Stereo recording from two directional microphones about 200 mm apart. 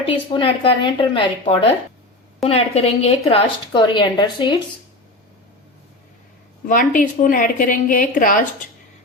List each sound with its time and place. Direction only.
0.0 s a woman's voice: 25° left (ahead or behind)
6.7 s a woman's voice: 40° left (ahead or behind)